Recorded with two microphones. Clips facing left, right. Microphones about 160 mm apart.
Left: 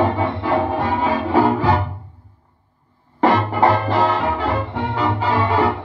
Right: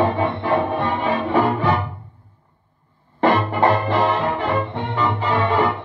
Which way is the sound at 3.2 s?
35° left (ahead or behind).